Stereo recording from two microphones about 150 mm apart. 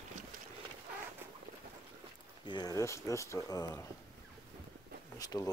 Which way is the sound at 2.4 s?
25° left (ahead or behind).